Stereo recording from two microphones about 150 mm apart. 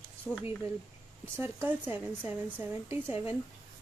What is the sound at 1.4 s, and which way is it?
A woman's voice, 15° right (ahead or behind).